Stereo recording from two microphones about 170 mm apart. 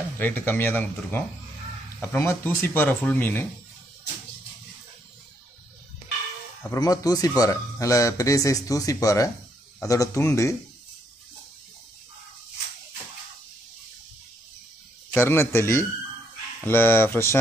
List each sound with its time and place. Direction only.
0.2 s speech: 10° left (ahead or behind)
6.7 s speech: 20° left (ahead or behind)
15.1 s speech: 15° left (ahead or behind)